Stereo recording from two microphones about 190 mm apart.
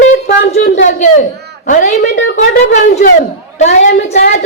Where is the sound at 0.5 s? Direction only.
40° left (ahead or behind).